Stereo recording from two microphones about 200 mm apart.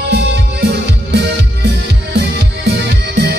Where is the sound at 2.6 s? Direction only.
55° right (ahead or behind).